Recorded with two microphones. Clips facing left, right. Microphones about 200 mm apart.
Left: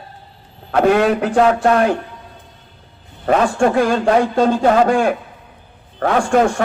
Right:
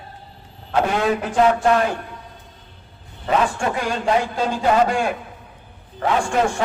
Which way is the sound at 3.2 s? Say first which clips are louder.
Left 6 dB; 50° left (ahead or behind).